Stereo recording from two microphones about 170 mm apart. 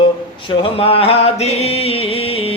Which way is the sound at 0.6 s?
35° left (ahead or behind).